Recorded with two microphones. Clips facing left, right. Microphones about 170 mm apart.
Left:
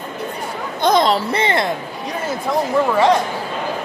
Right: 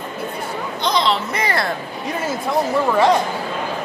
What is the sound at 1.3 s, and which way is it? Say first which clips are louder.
Speech: left 3 dB; 25° left (ahead or behind).